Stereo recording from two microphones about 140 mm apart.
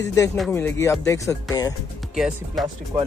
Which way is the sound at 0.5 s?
15° left (ahead or behind).